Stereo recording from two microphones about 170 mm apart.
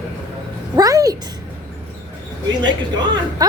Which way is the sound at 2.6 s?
25° right (ahead or behind).